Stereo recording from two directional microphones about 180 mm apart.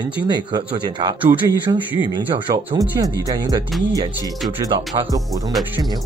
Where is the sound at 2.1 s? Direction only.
25° right (ahead or behind).